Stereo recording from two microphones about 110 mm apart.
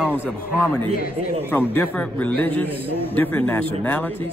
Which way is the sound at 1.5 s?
20° left (ahead or behind).